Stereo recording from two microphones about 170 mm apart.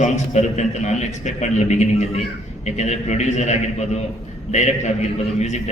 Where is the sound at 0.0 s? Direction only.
45° left (ahead or behind).